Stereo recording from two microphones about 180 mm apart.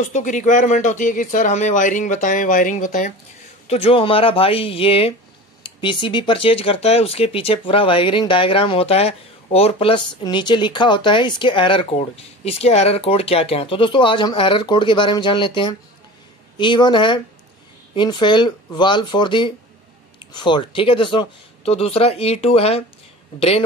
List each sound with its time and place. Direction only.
0.0 s speech: 45° left (ahead or behind)
3.6 s speech: 35° left (ahead or behind)